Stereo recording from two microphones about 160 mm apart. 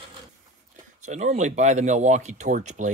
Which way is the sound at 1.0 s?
45° right (ahead or behind).